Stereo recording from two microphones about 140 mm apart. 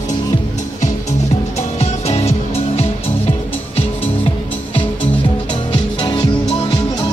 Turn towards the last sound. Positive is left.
turn(degrees=30)  # may be behind; listen again after turning